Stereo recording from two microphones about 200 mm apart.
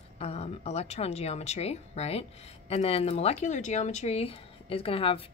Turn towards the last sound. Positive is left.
turn(degrees=30)  # may be behind; listen again after turning